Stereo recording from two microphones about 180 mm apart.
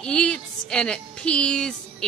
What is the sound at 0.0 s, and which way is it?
A woman's voice, 5° left (ahead or behind).